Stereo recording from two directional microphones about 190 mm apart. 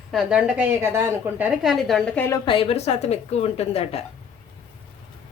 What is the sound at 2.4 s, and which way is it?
A woman's voice, 30° left (ahead or behind).